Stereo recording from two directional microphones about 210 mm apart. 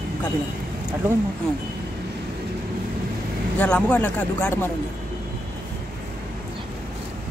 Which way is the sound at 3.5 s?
5° left (ahead or behind).